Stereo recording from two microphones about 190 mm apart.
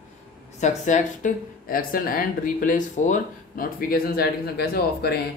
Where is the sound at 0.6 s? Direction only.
40° left (ahead or behind); by 5.2 s 55° left (ahead or behind).